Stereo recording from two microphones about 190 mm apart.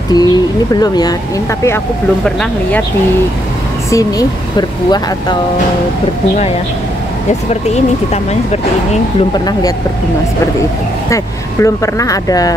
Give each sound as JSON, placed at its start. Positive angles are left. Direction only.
{"t": 0.1, "sound": "speech", "side_deg": 20}
{"t": 3.9, "sound": "speech", "side_deg": 20}
{"t": 7.7, "sound": "speech", "side_deg": 35}
{"t": 9.3, "sound": "speech", "side_deg": 20}
{"t": 11.6, "sound": "speech", "side_deg": 15}